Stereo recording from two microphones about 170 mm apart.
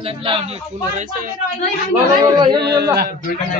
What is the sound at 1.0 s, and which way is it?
Speech, 55° right (ahead or behind).